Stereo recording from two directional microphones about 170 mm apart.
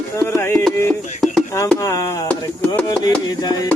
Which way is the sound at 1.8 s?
20° left (ahead or behind).